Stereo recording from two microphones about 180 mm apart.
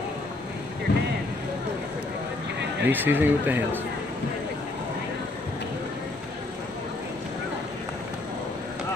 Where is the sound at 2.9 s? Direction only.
10° right (ahead or behind).